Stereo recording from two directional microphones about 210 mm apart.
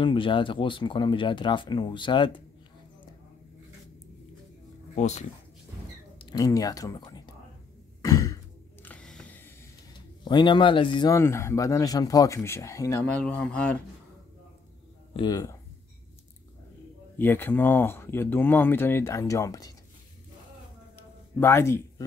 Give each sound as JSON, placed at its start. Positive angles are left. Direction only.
{"t": 0.0, "sound": "speech", "side_deg": 25}
{"t": 4.9, "sound": "speech", "side_deg": 35}
{"t": 6.1, "sound": "speech", "side_deg": 20}
{"t": 8.0, "sound": "throat clearing", "side_deg": 15}
{"t": 8.8, "sound": "a sound", "side_deg": 5}
{"t": 10.2, "sound": "speech", "side_deg": 20}
{"t": 15.1, "sound": "speech", "side_deg": 20}
{"t": 17.2, "sound": "speech", "side_deg": 10}
{"t": 21.4, "sound": "speech", "side_deg": 10}